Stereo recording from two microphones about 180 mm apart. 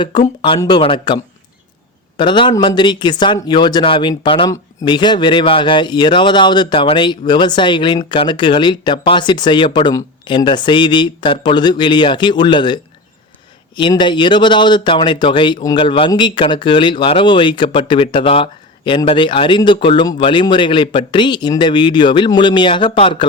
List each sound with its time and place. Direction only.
0.0 s speech: 25° left (ahead or behind)